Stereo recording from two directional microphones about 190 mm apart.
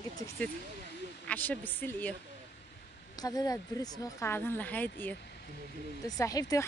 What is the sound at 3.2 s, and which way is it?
A woman's voice, 20° left (ahead or behind).